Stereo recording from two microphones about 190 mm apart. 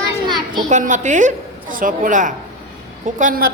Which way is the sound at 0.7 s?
40° right (ahead or behind).